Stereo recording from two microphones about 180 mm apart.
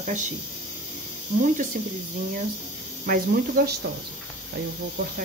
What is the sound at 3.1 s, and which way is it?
Speech, 55° right (ahead or behind).